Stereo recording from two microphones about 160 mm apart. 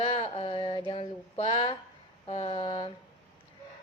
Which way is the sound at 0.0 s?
35° left (ahead or behind).